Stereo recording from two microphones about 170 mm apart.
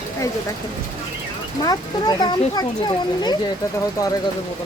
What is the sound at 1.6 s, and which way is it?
Speech, 25° left (ahead or behind).